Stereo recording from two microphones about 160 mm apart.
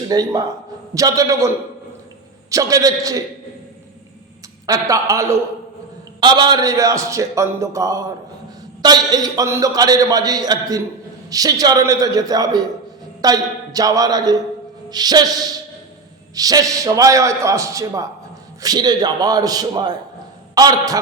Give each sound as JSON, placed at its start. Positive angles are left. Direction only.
{"t": 0.1, "sound": "a man's voice", "side_deg": -25}
{"t": 4.6, "sound": "a man's voice", "side_deg": -20}
{"t": 6.1, "sound": "a man's voice", "side_deg": -30}